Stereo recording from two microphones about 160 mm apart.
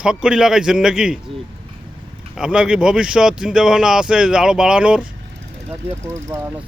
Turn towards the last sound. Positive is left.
turn(degrees=-15)  # may be behind; listen again after turning